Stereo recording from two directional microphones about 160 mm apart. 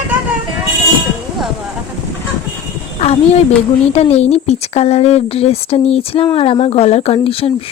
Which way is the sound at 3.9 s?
40° left (ahead or behind).